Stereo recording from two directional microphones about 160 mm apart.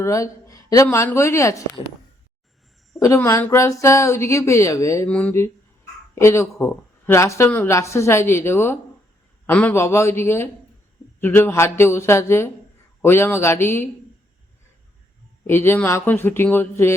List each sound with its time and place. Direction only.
0.0 s speech: 20° left (ahead or behind)
3.0 s speech: 20° left (ahead or behind)
5.0 s speech: 10° left (ahead or behind)
15.4 s speech: 15° left (ahead or behind)